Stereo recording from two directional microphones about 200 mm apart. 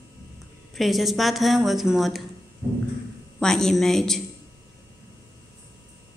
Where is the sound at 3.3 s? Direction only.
Centre (ahead or behind).